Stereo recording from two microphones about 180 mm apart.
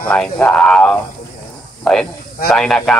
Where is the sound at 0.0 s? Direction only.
5° left (ahead or behind).